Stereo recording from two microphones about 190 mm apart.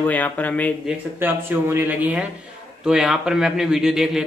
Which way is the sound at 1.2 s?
10° right (ahead or behind).